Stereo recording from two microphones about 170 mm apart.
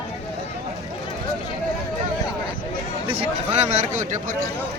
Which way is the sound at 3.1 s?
40° right (ahead or behind).